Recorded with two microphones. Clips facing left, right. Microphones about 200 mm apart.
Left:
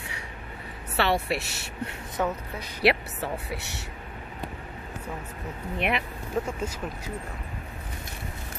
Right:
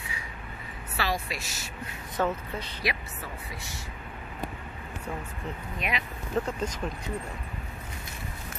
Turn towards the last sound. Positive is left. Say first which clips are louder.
# right 1 dB
turn(degrees=10)  # may be behind; listen again after turning